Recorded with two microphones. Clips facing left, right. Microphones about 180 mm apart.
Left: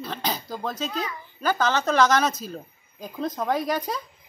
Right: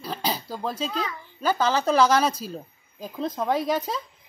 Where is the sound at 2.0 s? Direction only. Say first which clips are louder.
Left 1 dB; 30° right (ahead or behind).